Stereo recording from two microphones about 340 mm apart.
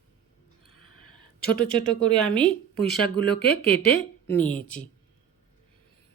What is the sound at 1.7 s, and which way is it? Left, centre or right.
Speech, centre.